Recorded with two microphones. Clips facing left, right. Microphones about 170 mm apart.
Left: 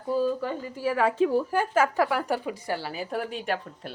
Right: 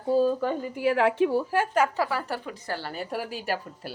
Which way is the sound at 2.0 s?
10° left (ahead or behind).